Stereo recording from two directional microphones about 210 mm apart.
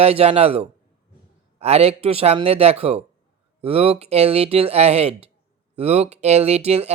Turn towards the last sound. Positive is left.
turn(degrees=-30)  # may be behind; listen again after turning